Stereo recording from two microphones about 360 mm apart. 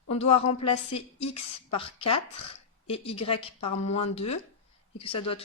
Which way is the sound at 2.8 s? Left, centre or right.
Centre.